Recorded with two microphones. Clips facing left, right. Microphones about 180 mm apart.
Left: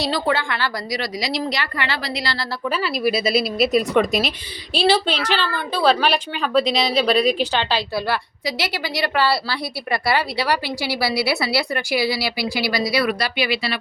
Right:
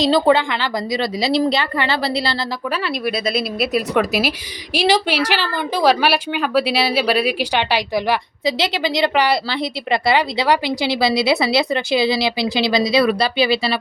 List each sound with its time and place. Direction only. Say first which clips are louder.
0.1 s speech: right 7 dB; 20° right (ahead or behind)
2.7 s speech: left 2 dB; centre (ahead or behind); by 13.7 s 30° right (ahead or behind)